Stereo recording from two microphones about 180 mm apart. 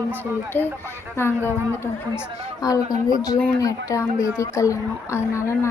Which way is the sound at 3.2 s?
20° left (ahead or behind).